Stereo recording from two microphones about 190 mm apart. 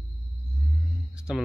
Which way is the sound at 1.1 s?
5° right (ahead or behind).